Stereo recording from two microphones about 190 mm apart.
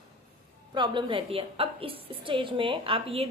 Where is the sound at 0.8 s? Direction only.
25° right (ahead or behind).